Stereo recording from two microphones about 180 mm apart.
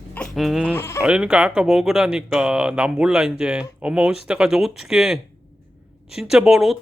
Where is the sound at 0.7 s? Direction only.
15° left (ahead or behind).